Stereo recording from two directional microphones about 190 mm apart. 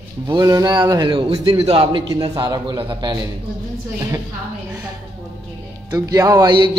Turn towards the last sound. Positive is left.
turn(degrees=-25)  # may be behind; listen again after turning